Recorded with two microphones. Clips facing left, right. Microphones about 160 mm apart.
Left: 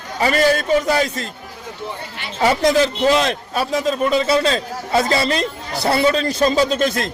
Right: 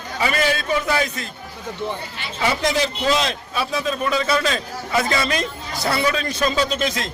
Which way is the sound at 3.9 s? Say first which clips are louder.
Left 5 dB; 25° left (ahead or behind).